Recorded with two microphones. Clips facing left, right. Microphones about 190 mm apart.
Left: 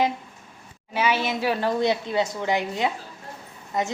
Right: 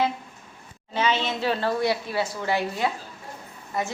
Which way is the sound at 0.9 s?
10° left (ahead or behind).